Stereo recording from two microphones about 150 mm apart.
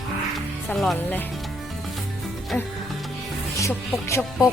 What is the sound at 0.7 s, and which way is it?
Speech, 5° left (ahead or behind).